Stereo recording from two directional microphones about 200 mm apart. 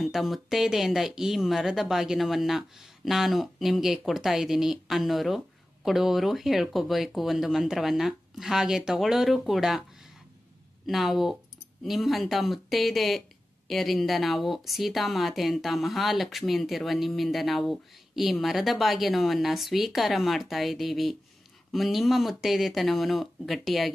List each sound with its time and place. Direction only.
0.0 s a woman's voice: centre (ahead or behind)
10.9 s a woman's voice: centre (ahead or behind)